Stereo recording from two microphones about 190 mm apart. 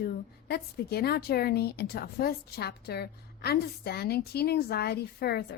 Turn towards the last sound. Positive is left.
turn(degrees=55)  # may be behind; listen again after turning